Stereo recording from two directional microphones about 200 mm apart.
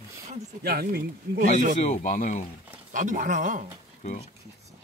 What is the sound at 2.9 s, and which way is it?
Speech, 40° right (ahead or behind).